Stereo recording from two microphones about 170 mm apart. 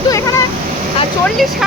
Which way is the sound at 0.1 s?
20° left (ahead or behind).